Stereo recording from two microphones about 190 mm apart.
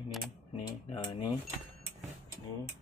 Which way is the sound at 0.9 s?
25° left (ahead or behind).